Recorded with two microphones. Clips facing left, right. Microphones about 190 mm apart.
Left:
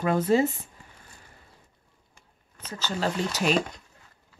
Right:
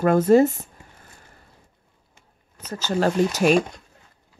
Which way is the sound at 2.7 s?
45° right (ahead or behind).